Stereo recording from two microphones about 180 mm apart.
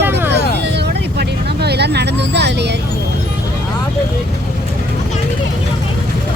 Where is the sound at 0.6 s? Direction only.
70° right (ahead or behind).